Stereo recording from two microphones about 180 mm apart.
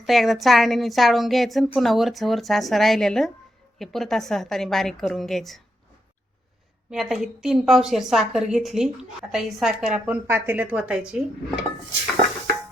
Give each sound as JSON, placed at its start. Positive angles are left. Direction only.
{"t": 0.0, "sound": "a woman's voice", "side_deg": 0}
{"t": 6.9, "sound": "a woman's voice", "side_deg": 0}
{"t": 10.2, "sound": "speech", "side_deg": -15}